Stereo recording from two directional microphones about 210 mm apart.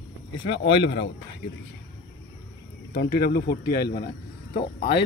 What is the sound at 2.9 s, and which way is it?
Speech, 50° left (ahead or behind).